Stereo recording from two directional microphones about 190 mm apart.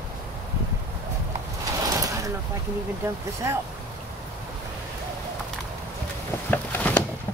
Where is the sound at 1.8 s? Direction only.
20° right (ahead or behind).